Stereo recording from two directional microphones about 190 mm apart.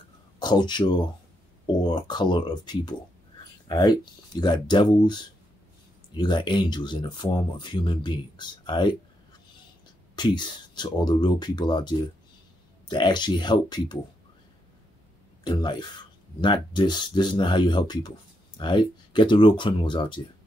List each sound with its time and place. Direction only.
0.4 s speech: 25° left (ahead or behind)
10.1 s speech: 25° left (ahead or behind)
15.4 s speech: 25° left (ahead or behind)